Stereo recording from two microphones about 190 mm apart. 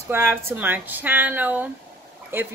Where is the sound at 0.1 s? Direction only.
10° right (ahead or behind).